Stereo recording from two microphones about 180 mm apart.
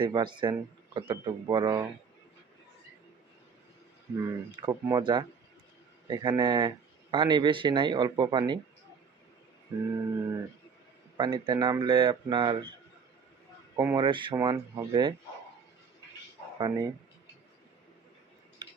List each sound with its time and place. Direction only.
0.0 s speech: 25° right (ahead or behind)
4.2 s speech: 20° right (ahead or behind)
9.7 s music: 15° right (ahead or behind)
11.2 s speech: 25° right (ahead or behind)
13.7 s speech: 20° right (ahead or behind)
16.6 s speech: 25° right (ahead or behind)